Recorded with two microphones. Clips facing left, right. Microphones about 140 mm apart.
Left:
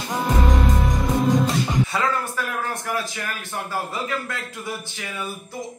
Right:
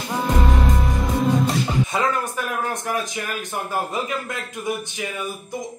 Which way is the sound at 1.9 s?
20° right (ahead or behind).